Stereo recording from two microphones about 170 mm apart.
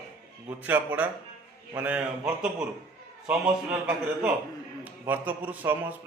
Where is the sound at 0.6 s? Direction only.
10° right (ahead or behind).